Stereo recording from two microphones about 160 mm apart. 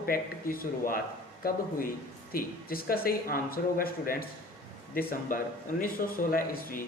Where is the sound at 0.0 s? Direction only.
65° left (ahead or behind).